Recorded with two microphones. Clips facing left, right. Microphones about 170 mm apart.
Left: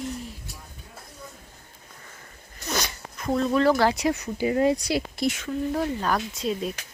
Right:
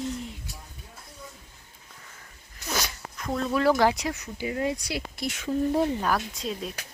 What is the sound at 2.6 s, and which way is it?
Sneeze, 5° right (ahead or behind).